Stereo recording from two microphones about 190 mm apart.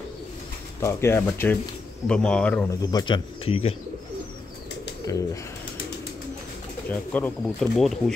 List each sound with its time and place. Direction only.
0.7 s speech: 15° left (ahead or behind)
2.7 s speech: 20° left (ahead or behind)
5.1 s speech: 15° left (ahead or behind)
6.9 s speech: 10° left (ahead or behind)